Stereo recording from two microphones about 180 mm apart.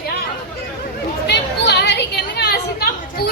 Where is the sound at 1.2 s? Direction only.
70° left (ahead or behind).